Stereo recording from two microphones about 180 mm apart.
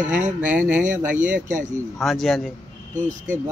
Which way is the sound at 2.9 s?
45° right (ahead or behind).